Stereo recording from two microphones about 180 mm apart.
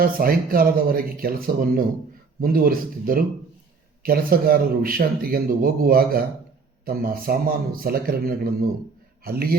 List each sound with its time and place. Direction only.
0.0 s a man's voice: 55° right (ahead or behind)